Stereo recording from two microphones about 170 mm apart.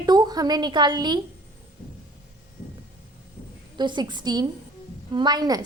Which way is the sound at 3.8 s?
25° right (ahead or behind).